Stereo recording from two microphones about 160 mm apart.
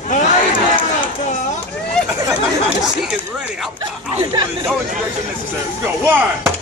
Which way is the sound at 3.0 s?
5° right (ahead or behind).